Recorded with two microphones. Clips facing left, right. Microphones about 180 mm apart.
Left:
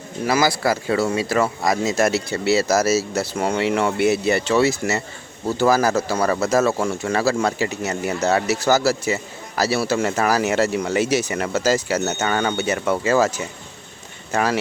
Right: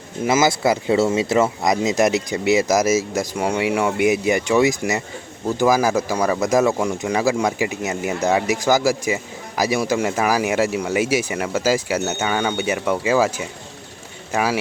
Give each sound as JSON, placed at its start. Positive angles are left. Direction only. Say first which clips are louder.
{"t": 0.2, "sound": "speech", "louder": "right 2 dB", "side_deg": -20}